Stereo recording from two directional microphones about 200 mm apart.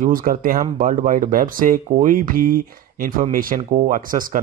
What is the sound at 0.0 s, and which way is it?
Speech, 45° right (ahead or behind).